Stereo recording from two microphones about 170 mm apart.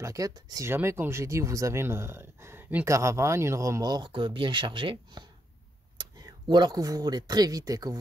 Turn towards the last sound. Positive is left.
turn(degrees=-20)  # may be behind; listen again after turning